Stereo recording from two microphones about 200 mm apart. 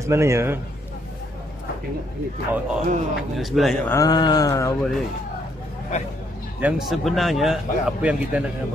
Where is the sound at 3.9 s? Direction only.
20° left (ahead or behind).